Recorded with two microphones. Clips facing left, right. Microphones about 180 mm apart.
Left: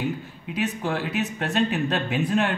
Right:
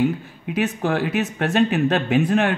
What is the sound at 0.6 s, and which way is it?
Speech, 55° right (ahead or behind).